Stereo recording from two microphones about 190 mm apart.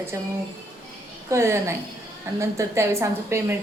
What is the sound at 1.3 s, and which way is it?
A woman's voice, 15° right (ahead or behind).